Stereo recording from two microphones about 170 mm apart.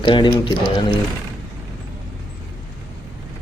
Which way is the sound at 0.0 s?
30° left (ahead or behind).